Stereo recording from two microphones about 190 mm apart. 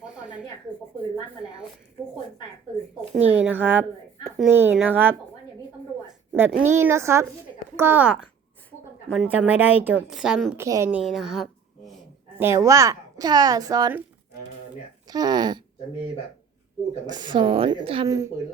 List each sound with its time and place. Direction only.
0.0 s a sound: 5° right (ahead or behind)
3.2 s a woman's voice: 10° right (ahead or behind)
6.1 s a sound: 10° right (ahead or behind)
6.6 s a woman's voice: 10° right (ahead or behind)
12.4 s a woman's voice: 15° right (ahead or behind)
15.0 s speech: 20° right (ahead or behind)
17.1 s a woman's voice: 25° right (ahead or behind)